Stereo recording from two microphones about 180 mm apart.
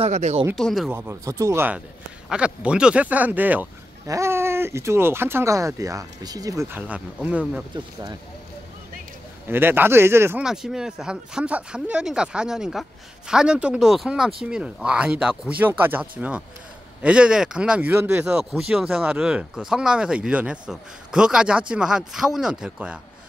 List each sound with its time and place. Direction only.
0.0 s speech: 35° right (ahead or behind)
0.6 s speech: centre (ahead or behind)
0.9 s speech: 15° right (ahead or behind)
7.7 s speech: 20° right (ahead or behind)
9.5 s speech: 10° right (ahead or behind)
10.4 s speech: 5° right (ahead or behind)